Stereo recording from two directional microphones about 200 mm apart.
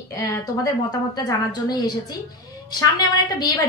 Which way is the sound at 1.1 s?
20° left (ahead or behind).